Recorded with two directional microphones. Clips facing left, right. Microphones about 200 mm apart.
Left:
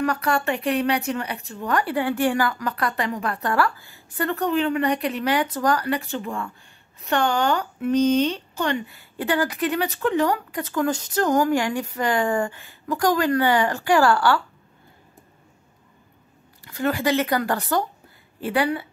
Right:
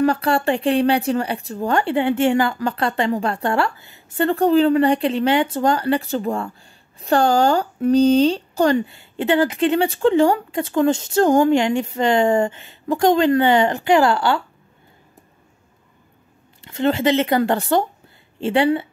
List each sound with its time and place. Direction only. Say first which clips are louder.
0.0 s speech: right 5 dB; 30° right (ahead or behind)
16.6 s speech: right 5 dB; 25° right (ahead or behind)